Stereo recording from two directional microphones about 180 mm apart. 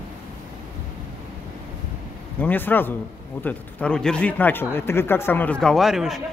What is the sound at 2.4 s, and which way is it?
A man's voice, 10° left (ahead or behind).